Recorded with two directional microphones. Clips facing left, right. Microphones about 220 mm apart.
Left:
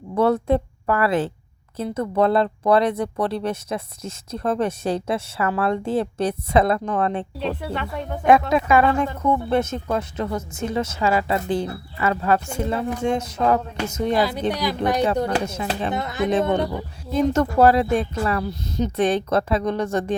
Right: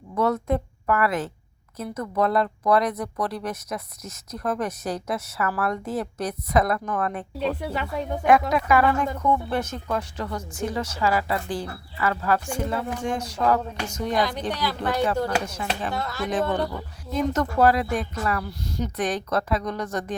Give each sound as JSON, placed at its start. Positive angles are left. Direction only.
{"t": 0.1, "sound": "a woman's voice", "side_deg": 30}
{"t": 7.7, "sound": "speech", "side_deg": -5}
{"t": 8.3, "sound": "speech", "side_deg": 25}
{"t": 14.2, "sound": "speech", "side_deg": 10}